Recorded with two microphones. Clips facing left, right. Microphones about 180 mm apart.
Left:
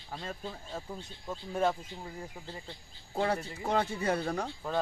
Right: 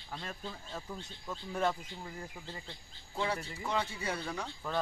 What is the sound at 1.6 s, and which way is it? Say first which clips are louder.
Speech: left 3 dB; 10° left (ahead or behind).